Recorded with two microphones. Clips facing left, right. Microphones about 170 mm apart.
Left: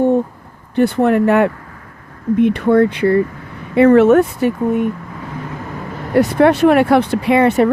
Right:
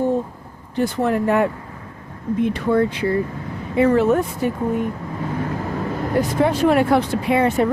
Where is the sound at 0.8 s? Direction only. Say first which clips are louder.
Left 6 dB; 65° left (ahead or behind).